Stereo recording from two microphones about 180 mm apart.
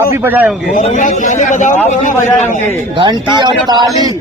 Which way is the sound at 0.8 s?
45° left (ahead or behind).